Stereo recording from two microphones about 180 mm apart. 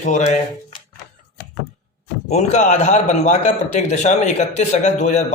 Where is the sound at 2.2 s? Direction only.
40° left (ahead or behind).